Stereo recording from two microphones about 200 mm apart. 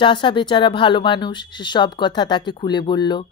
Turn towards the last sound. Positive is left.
turn(degrees=20)  # may be behind; listen again after turning